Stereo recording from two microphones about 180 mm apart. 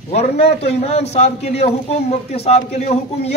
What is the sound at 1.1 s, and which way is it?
A man's voice, 35° left (ahead or behind).